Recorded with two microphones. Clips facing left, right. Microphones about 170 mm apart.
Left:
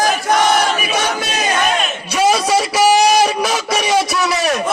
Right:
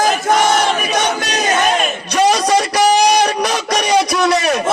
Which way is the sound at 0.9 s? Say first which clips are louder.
Right 2 dB; 5° left (ahead or behind).